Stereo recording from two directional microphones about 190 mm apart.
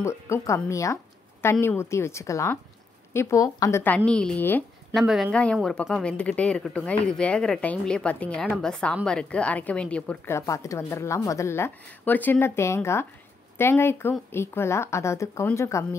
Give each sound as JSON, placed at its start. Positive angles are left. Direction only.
{"t": 0.0, "sound": "a woman's voice", "side_deg": 15}
{"t": 5.0, "sound": "a woman's voice", "side_deg": 0}